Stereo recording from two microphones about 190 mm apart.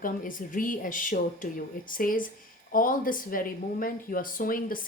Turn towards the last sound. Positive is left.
turn(degrees=50)  # may be behind; listen again after turning